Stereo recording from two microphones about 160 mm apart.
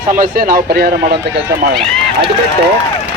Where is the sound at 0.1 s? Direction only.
60° right (ahead or behind).